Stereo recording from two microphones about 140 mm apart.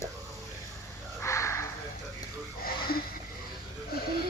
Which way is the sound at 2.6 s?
90° left.